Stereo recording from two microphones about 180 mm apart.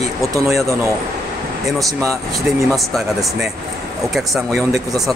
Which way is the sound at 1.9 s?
15° right (ahead or behind).